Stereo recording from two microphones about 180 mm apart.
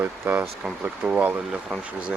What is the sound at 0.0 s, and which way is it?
Speech, 10° right (ahead or behind).